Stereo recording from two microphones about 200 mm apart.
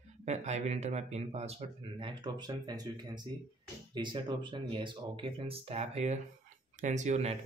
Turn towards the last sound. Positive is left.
turn(degrees=-35)  # may be behind; listen again after turning